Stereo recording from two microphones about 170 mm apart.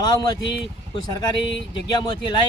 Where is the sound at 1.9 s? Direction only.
25° left (ahead or behind).